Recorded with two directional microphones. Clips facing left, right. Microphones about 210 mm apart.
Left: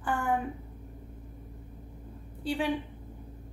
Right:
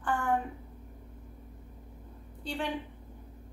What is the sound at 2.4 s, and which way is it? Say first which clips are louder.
Speech: left 5 dB; 5° left (ahead or behind).